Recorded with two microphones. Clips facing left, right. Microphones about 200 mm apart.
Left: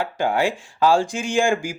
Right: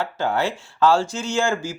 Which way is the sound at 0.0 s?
15° left (ahead or behind).